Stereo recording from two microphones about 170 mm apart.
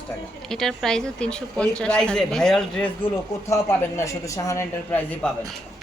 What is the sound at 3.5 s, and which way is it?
A man's voice, 15° left (ahead or behind).